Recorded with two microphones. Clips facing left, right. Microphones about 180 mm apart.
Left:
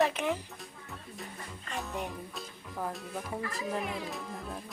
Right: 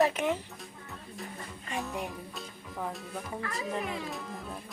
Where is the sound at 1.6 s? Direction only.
Centre (ahead or behind).